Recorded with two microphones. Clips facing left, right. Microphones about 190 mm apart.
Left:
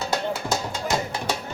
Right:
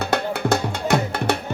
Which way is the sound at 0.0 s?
60° right (ahead or behind).